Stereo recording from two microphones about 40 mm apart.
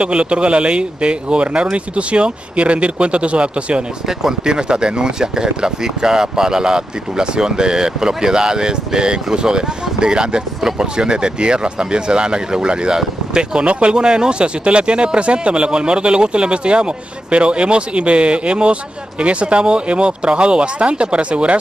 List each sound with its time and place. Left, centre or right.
0.0 s speech: right
4.2 s speech: centre